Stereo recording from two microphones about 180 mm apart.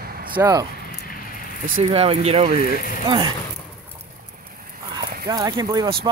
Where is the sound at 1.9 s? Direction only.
35° right (ahead or behind).